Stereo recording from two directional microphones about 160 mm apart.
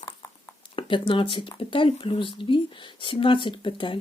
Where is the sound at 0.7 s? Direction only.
35° left (ahead or behind).